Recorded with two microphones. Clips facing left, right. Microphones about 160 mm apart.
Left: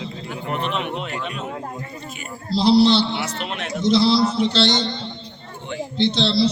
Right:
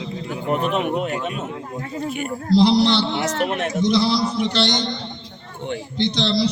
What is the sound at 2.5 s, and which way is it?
Speech, 20° right (ahead or behind).